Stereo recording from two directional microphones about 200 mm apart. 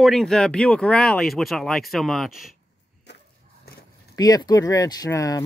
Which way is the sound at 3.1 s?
60° left (ahead or behind).